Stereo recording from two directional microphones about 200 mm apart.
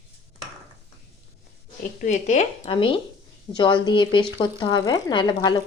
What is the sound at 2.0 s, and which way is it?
Speech, 35° left (ahead or behind).